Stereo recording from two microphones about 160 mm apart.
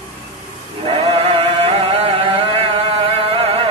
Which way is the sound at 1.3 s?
40° right (ahead or behind).